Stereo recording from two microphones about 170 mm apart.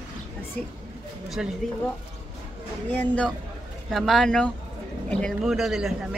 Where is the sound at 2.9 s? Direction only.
10° left (ahead or behind).